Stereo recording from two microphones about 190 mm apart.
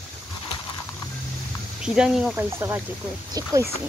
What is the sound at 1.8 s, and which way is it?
Speech, 5° right (ahead or behind).